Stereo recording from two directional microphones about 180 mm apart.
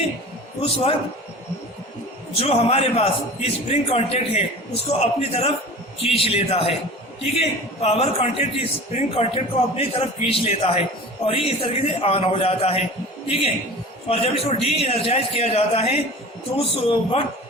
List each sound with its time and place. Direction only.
0.6 s a man's voice: 30° left (ahead or behind)
2.4 s a man's voice: 35° left (ahead or behind)